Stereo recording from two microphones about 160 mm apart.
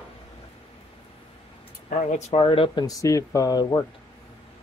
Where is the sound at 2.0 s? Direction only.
45° left (ahead or behind); by 3.8 s 25° left (ahead or behind).